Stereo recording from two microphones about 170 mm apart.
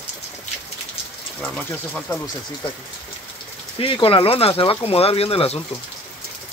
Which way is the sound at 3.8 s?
30° left (ahead or behind).